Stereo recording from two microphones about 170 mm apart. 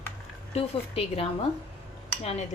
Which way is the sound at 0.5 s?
35° left (ahead or behind).